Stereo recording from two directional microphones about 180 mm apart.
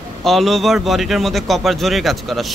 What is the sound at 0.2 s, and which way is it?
A man's voice, centre (ahead or behind).